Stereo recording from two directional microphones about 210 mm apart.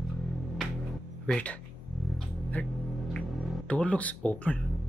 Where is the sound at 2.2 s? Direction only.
5° left (ahead or behind).